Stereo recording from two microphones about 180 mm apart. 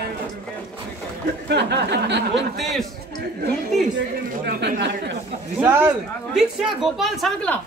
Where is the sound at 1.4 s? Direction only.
70° right (ahead or behind).